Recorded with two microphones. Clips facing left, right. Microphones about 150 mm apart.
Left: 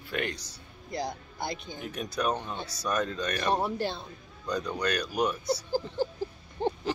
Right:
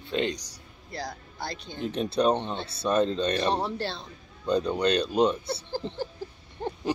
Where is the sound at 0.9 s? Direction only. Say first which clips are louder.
Left 3 dB; 15° left (ahead or behind).